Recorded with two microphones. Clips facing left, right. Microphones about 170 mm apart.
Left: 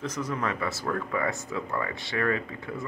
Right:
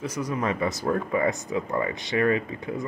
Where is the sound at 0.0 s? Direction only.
10° right (ahead or behind).